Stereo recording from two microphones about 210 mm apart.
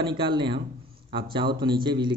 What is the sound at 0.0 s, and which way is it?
Speech, 25° right (ahead or behind).